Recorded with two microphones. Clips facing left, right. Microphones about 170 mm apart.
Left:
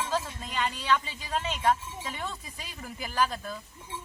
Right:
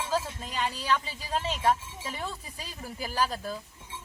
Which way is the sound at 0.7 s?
35° right (ahead or behind).